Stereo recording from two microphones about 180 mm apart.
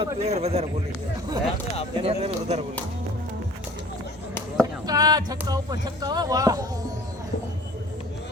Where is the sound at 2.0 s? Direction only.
35° right (ahead or behind).